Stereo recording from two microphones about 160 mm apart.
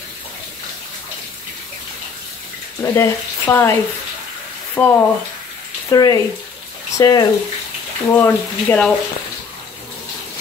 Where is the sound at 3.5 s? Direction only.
15° left (ahead or behind).